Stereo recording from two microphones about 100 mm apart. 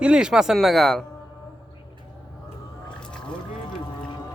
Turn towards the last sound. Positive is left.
turn(degrees=10)  # may be behind; listen again after turning